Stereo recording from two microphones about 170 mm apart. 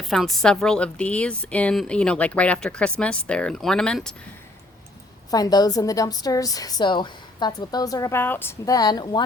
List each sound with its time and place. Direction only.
0.0 s a woman's voice: centre (ahead or behind)
5.3 s a woman's voice: 25° left (ahead or behind)